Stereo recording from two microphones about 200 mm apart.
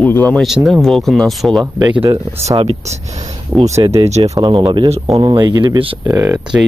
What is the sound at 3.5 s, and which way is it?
Speech, 5° right (ahead or behind).